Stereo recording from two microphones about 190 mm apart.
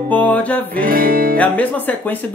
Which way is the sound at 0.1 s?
5° left (ahead or behind).